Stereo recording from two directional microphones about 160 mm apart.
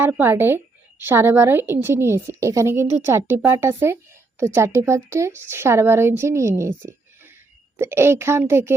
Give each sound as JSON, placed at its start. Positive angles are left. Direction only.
{"t": 0.0, "sound": "a woman's voice", "side_deg": -15}